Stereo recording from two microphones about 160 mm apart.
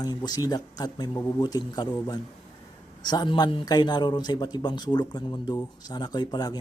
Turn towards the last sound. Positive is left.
turn(degrees=25)  # may be behind; listen again after turning